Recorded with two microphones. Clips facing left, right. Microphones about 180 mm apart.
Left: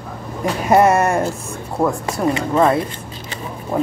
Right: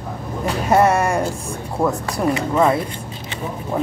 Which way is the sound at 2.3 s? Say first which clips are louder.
Left 1 dB; 25° left (ahead or behind).